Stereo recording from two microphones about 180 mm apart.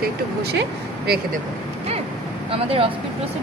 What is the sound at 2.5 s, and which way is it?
Speech, 30° right (ahead or behind).